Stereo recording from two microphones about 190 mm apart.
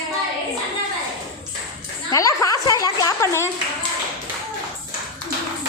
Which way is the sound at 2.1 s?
15° left (ahead or behind).